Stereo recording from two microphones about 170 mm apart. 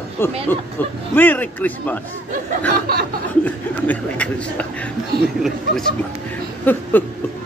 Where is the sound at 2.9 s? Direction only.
65° right (ahead or behind).